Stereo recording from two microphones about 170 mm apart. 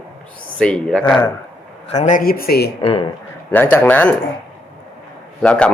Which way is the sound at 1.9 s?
50° left (ahead or behind).